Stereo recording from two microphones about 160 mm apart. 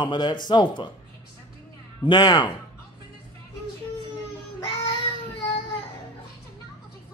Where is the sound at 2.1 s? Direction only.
25° left (ahead or behind).